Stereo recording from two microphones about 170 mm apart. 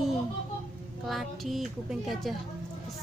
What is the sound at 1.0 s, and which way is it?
Speech, centre (ahead or behind).